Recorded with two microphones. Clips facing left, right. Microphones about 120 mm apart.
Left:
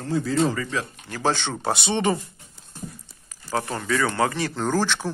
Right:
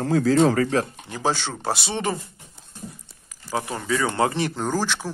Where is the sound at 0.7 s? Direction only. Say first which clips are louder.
Right 6 dB; 50° right (ahead or behind).